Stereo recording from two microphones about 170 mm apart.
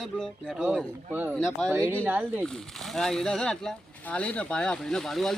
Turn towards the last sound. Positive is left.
turn(degrees=0)  # may be behind; listen again after turning